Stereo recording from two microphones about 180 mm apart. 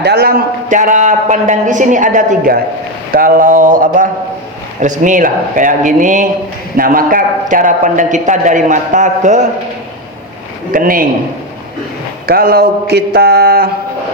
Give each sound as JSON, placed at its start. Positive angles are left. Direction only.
{"t": 0.0, "sound": "a man's voice", "side_deg": -60}
{"t": 10.7, "sound": "a man's voice", "side_deg": -50}
{"t": 12.2, "sound": "speech", "side_deg": -55}